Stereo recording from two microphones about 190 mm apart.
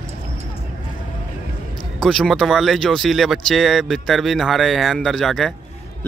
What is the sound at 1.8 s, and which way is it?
Speech, centre (ahead or behind).